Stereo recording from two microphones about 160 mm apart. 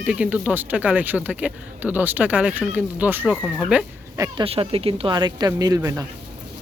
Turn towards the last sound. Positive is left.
turn(degrees=-20)  # may be behind; listen again after turning